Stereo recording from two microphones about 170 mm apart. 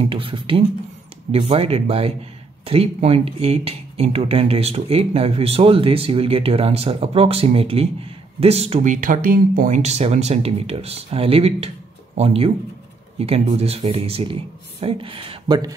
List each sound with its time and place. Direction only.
0.0 s speech: 30° right (ahead or behind)